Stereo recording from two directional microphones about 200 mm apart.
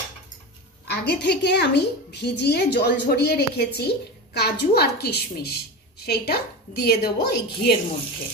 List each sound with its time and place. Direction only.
0.8 s a woman's voice: 55° left (ahead or behind)